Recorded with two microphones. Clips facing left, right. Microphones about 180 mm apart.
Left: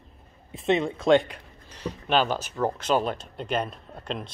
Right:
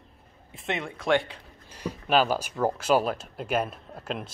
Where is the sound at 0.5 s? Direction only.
25° left (ahead or behind).